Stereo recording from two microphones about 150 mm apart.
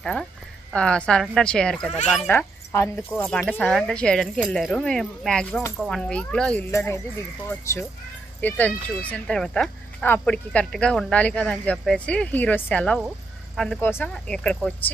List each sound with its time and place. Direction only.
0.0 s speech: 5° left (ahead or behind)
2.2 s speech: 15° left (ahead or behind)
6.7 s speech: 15° left (ahead or behind)